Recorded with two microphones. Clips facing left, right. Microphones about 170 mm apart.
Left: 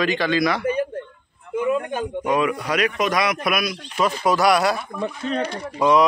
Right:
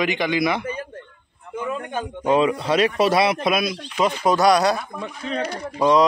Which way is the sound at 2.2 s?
25° right (ahead or behind).